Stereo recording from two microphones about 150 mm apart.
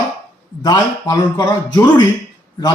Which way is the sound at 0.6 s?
25° left (ahead or behind).